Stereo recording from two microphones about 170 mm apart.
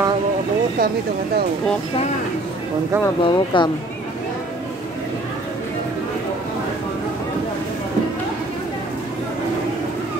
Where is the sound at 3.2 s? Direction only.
30° left (ahead or behind).